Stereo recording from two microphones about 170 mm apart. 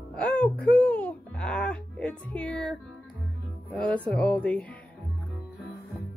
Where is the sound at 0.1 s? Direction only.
10° left (ahead or behind).